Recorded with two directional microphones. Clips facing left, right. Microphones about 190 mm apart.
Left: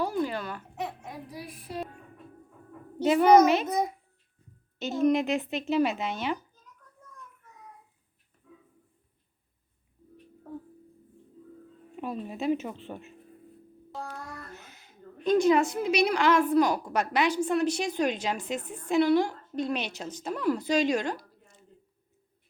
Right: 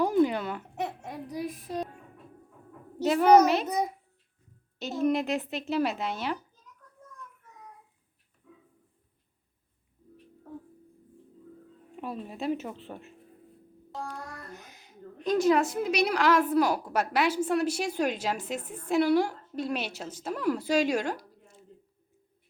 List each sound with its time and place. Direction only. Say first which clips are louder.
0.0 s a sound: right 5 dB; 20° right (ahead or behind)
1.3 s child singing: right 8 dB; 20° right (ahead or behind)
3.0 s a woman's voice: left 1 dB; 5° left (ahead or behind)
4.8 s a woman's voice: left 2 dB; centre (ahead or behind)
11.9 s a woman's voice: left 2 dB; centre (ahead or behind)
14.5 s a sound: right 1 dB; 15° right (ahead or behind)
15.2 s a woman's voice: left 2 dB; centre (ahead or behind)